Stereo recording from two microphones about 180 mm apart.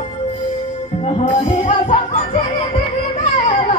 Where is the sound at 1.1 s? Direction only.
30° left (ahead or behind).